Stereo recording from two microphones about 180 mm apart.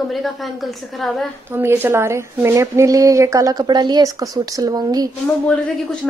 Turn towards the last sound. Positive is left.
turn(degrees=5)  # may be behind; listen again after turning